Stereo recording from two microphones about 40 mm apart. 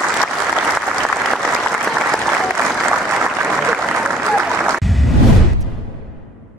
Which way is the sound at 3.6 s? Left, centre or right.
Right.